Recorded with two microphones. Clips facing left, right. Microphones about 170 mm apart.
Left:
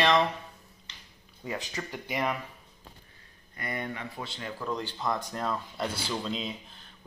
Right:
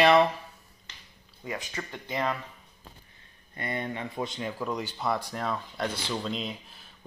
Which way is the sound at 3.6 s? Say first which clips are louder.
Right 2 dB; 25° right (ahead or behind).